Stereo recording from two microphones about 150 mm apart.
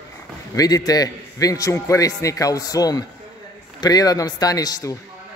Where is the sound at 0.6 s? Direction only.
25° left (ahead or behind).